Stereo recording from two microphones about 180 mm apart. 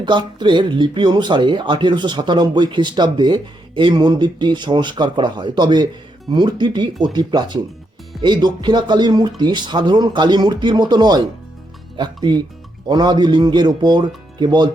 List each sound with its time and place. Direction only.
0.0 s speech: 25° right (ahead or behind)